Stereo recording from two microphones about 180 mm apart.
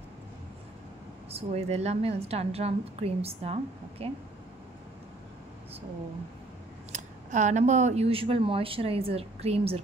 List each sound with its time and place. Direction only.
1.3 s speech: 35° right (ahead or behind)
6.9 s speech: 40° right (ahead or behind)